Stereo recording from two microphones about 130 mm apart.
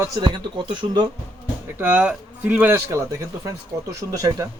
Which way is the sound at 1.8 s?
10° right (ahead or behind).